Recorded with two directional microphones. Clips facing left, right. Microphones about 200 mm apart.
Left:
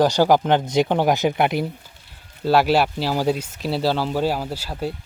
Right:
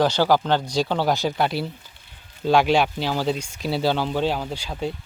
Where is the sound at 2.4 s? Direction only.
5° left (ahead or behind).